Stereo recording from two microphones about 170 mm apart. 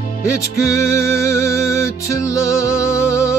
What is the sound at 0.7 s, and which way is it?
Music, 15° left (ahead or behind).